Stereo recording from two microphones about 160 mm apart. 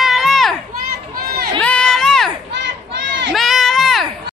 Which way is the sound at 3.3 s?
Centre (ahead or behind).